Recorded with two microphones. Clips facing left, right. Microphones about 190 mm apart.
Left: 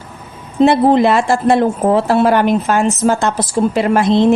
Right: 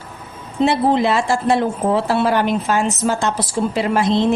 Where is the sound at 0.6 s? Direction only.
55° left (ahead or behind).